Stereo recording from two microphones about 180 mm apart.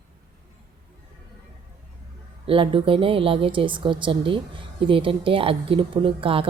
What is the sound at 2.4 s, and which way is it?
A woman's voice, 30° right (ahead or behind).